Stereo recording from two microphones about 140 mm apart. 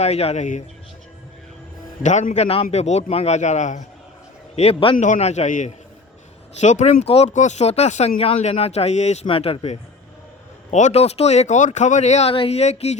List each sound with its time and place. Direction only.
0.0 s speech: 50° left (ahead or behind)
2.0 s speech: 60° left (ahead or behind)
4.5 s speech: 45° left (ahead or behind)
4.9 s speech: 60° left (ahead or behind)
9.2 s speech: 40° left (ahead or behind)
10.7 s speech: 55° left (ahead or behind)